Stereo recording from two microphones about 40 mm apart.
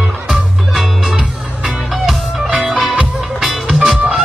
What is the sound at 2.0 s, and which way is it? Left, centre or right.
Music, centre.